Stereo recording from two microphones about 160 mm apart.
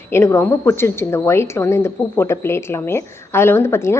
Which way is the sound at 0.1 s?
15° left (ahead or behind).